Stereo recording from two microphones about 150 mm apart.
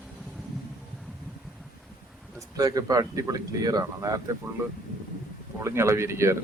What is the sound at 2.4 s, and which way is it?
Speech, 25° right (ahead or behind).